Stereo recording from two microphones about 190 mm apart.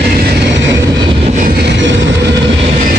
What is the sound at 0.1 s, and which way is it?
Vehicle, 60° right (ahead or behind).